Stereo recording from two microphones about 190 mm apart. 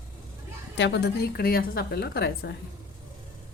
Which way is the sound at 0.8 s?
65° left (ahead or behind).